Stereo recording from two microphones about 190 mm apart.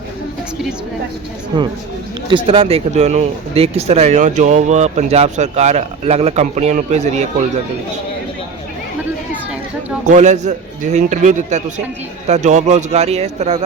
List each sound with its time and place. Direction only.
2.3 s speech: 30° right (ahead or behind)
10.1 s speech: 40° right (ahead or behind)